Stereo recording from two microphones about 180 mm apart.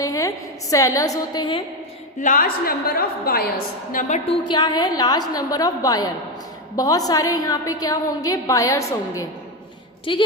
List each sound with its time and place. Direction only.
0.0 s a woman's voice: 20° left (ahead or behind)
2.2 s a woman's voice: 50° left (ahead or behind)
4.3 s a woman's voice: 25° left (ahead or behind)
10.1 s a woman's voice: 30° left (ahead or behind)